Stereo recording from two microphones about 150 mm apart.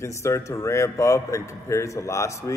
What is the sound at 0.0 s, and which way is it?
A man's voice, 20° left (ahead or behind).